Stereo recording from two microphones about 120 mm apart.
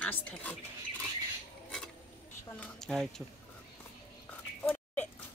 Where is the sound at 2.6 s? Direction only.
5° left (ahead or behind).